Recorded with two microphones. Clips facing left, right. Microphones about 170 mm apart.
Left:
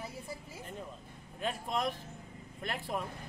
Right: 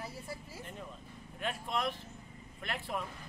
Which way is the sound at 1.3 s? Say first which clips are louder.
Left 2 dB; 35° left (ahead or behind).